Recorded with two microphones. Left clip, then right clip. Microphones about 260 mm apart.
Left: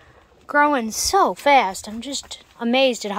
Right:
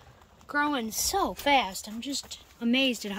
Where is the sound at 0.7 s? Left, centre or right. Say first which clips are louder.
Left 9 dB; centre.